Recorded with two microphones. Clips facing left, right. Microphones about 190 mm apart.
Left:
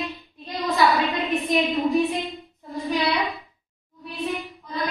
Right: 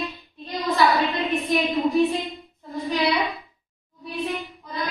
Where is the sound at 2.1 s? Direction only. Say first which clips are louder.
Even; centre (ahead or behind).